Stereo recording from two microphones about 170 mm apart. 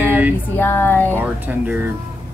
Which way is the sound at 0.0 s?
10° right (ahead or behind).